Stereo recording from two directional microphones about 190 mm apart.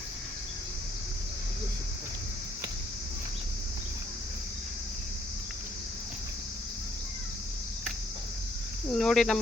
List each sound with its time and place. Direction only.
8.9 s speech: centre (ahead or behind)